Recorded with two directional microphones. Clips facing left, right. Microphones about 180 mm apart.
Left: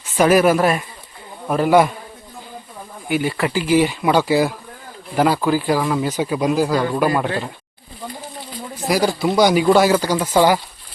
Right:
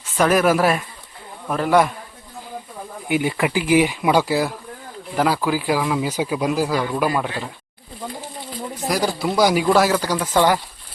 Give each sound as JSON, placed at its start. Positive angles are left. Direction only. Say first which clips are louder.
{"t": 0.2, "sound": "speech", "louder": "left 3 dB", "side_deg": 5}
{"t": 3.1, "sound": "speech", "louder": "even", "side_deg": -15}
{"t": 8.9, "sound": "speech", "louder": "left 4 dB", "side_deg": 0}